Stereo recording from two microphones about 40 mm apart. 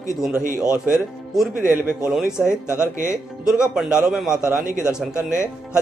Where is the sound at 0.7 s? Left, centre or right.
Right.